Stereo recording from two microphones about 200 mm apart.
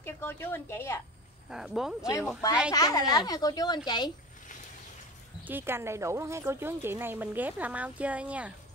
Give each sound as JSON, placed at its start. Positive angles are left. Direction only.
{"t": 0.0, "sound": "a woman's voice", "side_deg": 10}
{"t": 1.5, "sound": "speech", "side_deg": -5}
{"t": 2.7, "sound": "speech", "side_deg": 20}
{"t": 5.4, "sound": "speech", "side_deg": -10}